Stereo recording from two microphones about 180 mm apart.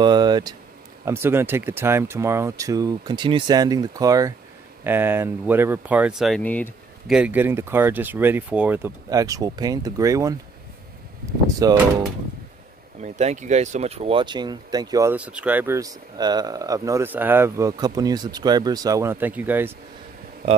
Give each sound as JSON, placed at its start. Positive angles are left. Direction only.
{"t": 0.0, "sound": "speech", "side_deg": -25}
{"t": 7.1, "sound": "speech", "side_deg": -5}
{"t": 11.6, "sound": "speech", "side_deg": -15}
{"t": 13.0, "sound": "speech", "side_deg": -40}
{"t": 15.1, "sound": "speech", "side_deg": -5}
{"t": 20.4, "sound": "speech", "side_deg": -35}